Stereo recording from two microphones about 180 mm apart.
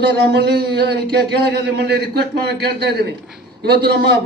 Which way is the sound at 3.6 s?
65° right (ahead or behind).